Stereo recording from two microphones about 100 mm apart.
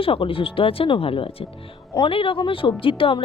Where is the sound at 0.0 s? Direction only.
65° left (ahead or behind).